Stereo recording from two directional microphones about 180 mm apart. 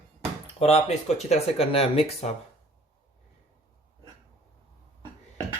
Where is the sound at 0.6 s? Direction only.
35° left (ahead or behind).